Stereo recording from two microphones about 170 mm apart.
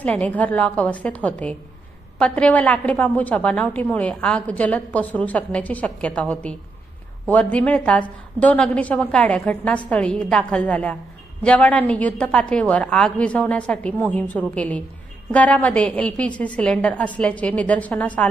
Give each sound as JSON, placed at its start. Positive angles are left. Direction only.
{"t": 0.0, "sound": "a woman's voice", "side_deg": 10}